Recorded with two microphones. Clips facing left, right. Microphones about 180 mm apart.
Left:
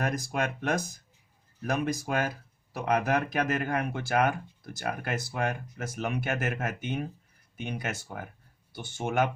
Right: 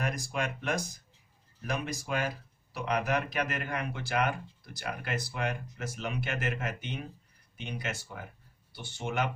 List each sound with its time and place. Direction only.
0.0 s speech: 45° left (ahead or behind)